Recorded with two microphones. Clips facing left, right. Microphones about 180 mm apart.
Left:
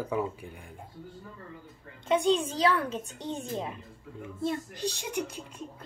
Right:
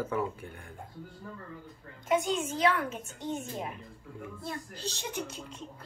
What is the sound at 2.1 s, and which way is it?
Speech, 30° left (ahead or behind).